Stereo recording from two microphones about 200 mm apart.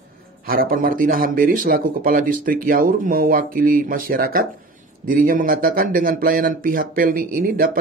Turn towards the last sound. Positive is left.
turn(degrees=-45)  # may be behind; listen again after turning